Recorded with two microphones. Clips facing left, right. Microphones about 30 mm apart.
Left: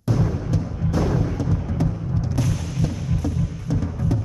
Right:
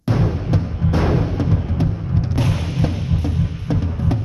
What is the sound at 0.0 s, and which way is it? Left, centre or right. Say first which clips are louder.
Music: right 3 dB; right.